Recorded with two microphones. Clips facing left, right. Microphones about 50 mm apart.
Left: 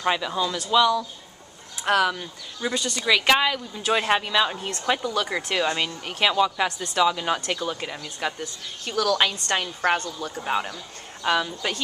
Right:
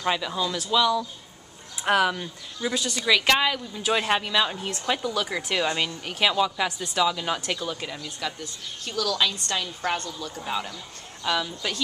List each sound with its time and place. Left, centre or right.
0.0 s speech: centre
1.9 s speech: centre
8.2 s a woman's voice: left